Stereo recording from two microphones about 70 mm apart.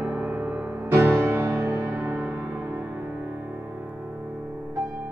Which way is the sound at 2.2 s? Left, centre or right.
Centre.